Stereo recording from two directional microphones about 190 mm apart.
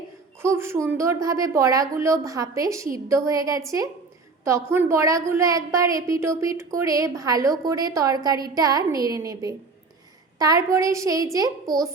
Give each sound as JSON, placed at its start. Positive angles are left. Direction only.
{"t": 0.4, "sound": "a woman's voice", "side_deg": -15}